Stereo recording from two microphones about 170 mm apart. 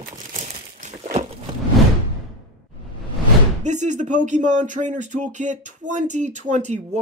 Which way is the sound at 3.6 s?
45° right (ahead or behind).